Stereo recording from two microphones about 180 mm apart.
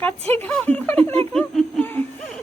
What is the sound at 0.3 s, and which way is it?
Speech, 10° left (ahead or behind).